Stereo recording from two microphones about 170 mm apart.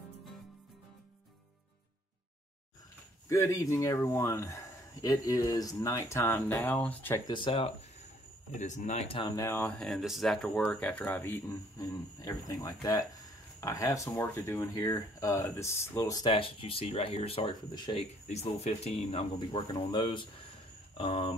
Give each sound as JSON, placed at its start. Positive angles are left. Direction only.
{"t": 3.3, "sound": "speech", "side_deg": 15}
{"t": 7.2, "sound": "speech", "side_deg": 30}
{"t": 8.5, "sound": "speech", "side_deg": 45}
{"t": 9.3, "sound": "speech", "side_deg": 15}
{"t": 16.2, "sound": "speech", "side_deg": 30}